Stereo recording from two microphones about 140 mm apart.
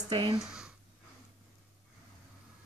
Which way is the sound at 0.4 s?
5° right (ahead or behind).